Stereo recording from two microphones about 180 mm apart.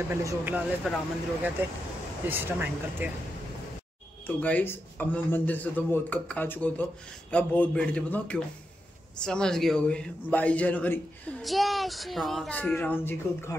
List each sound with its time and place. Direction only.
0.1 s speech: 15° right (ahead or behind)
0.8 s a man's voice: 5° right (ahead or behind)
2.2 s speech: 10° right (ahead or behind)
4.4 s a man's voice: 10° left (ahead or behind)